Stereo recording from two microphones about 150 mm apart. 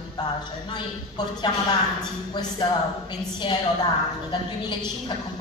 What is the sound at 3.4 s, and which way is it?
Speech, 30° left (ahead or behind).